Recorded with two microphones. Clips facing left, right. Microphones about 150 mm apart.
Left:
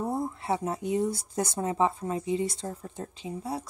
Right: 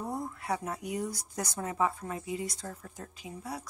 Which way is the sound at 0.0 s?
25° left (ahead or behind).